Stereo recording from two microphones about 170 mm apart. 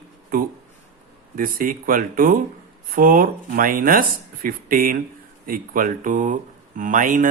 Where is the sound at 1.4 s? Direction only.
55° right (ahead or behind).